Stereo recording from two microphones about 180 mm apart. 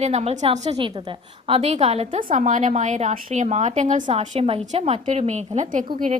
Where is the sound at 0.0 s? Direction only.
35° right (ahead or behind).